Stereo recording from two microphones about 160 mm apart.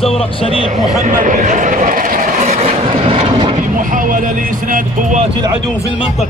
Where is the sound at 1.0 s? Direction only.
55° right (ahead or behind); by 3.5 s 35° right (ahead or behind).